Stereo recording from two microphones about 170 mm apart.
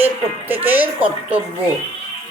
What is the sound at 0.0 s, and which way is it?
Speech, 10° right (ahead or behind).